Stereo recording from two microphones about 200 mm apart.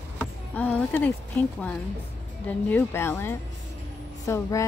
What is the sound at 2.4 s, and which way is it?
Speech, 10° left (ahead or behind).